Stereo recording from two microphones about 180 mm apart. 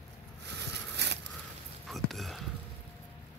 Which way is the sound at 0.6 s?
70° right (ahead or behind).